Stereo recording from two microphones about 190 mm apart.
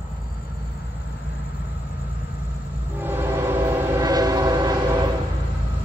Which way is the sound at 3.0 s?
10° right (ahead or behind).